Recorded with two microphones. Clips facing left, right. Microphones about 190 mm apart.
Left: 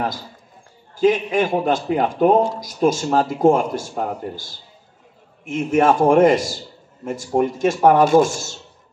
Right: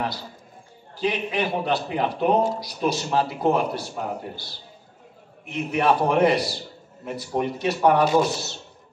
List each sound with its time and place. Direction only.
0.9 s a man's voice: 45° left (ahead or behind)